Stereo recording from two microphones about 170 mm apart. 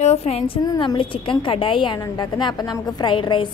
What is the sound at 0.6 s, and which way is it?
A woman's voice, 25° left (ahead or behind).